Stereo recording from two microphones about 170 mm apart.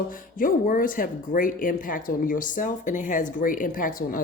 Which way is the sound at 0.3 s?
55° left (ahead or behind).